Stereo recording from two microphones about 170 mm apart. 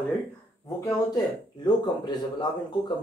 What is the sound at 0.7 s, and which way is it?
Speech, 20° left (ahead or behind).